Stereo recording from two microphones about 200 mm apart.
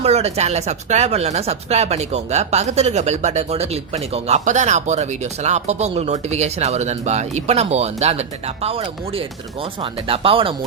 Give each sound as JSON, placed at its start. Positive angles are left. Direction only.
{"t": 0.0, "sound": "speech", "side_deg": -30}